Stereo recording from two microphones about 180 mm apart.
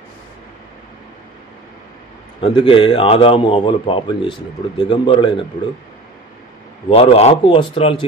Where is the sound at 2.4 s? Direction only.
25° left (ahead or behind).